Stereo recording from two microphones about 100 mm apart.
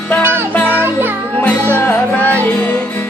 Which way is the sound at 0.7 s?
20° right (ahead or behind).